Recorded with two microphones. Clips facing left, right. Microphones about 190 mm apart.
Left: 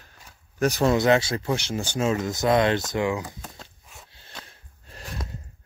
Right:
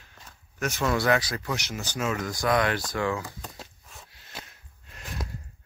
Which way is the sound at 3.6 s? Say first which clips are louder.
Even; 30° left (ahead or behind).